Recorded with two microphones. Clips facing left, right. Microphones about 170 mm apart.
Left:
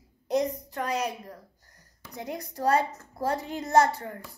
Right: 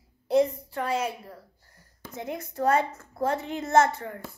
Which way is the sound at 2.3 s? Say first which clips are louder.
Right 1 dB; 35° left (ahead or behind).